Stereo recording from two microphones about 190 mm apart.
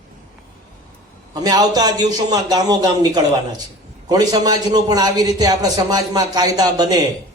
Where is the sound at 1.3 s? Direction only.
20° right (ahead or behind).